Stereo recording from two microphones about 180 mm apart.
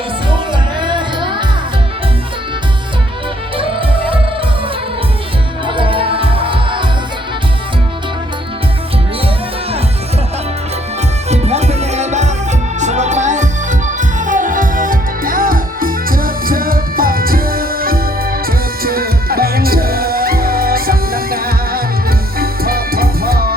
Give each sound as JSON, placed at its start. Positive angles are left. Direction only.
{"t": 0.5, "sound": "music", "side_deg": -25}
{"t": 3.6, "sound": "music", "side_deg": -30}
{"t": 5.6, "sound": "music", "side_deg": -30}
{"t": 11.3, "sound": "music", "side_deg": -35}